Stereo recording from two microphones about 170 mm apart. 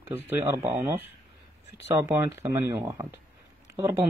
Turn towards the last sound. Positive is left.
turn(degrees=-15)  # may be behind; listen again after turning